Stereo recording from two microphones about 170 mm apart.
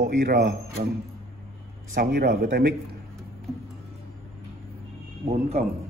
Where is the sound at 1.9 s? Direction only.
70° right (ahead or behind).